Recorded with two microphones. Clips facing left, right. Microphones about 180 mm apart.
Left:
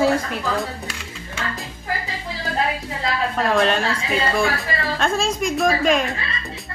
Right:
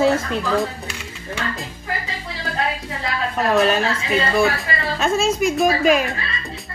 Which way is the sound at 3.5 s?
5° right (ahead or behind).